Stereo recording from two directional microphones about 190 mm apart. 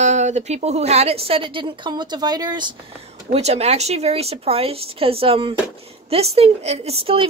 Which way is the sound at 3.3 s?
35° right (ahead or behind).